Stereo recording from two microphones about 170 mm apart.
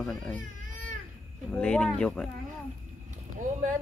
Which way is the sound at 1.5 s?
5° left (ahead or behind).